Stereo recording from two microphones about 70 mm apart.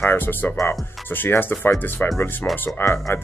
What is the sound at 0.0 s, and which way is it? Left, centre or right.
Speech, left.